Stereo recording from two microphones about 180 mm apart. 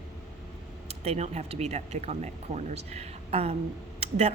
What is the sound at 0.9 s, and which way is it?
A woman's voice, 35° right (ahead or behind).